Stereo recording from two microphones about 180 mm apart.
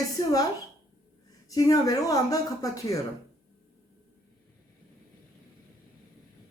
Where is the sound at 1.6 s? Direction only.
20° left (ahead or behind).